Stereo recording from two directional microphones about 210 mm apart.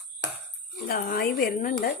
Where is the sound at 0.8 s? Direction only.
45° left (ahead or behind).